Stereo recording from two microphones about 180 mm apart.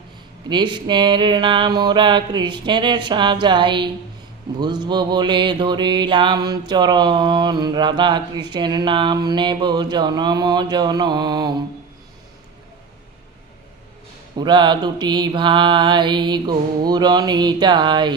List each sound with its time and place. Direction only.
0.4 s music: 25° right (ahead or behind)
14.3 s music: 25° right (ahead or behind)